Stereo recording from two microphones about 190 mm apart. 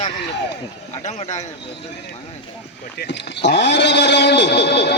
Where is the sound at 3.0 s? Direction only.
65° left (ahead or behind).